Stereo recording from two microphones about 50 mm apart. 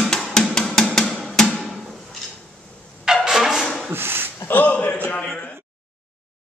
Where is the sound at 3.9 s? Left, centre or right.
Right.